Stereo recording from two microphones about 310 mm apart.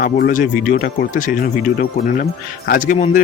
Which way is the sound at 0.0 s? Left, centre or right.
Left.